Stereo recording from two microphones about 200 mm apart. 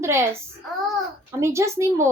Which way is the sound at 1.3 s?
15° right (ahead or behind).